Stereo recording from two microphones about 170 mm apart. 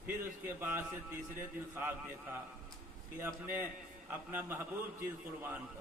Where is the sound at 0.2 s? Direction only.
15° right (ahead or behind).